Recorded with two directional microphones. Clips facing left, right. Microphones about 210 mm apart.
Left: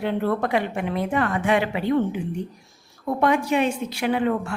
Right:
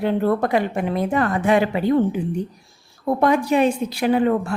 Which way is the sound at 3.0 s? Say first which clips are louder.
Right 3 dB; 40° right (ahead or behind).